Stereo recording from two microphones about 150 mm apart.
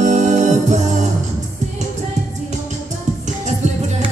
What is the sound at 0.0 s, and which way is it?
Music, 50° right (ahead or behind).